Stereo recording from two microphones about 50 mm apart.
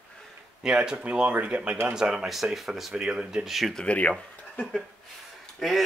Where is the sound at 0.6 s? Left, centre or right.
Centre.